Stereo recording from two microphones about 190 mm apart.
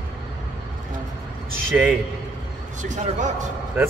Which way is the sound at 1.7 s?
5° right (ahead or behind).